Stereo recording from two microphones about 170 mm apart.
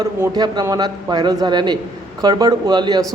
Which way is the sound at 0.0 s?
20° right (ahead or behind).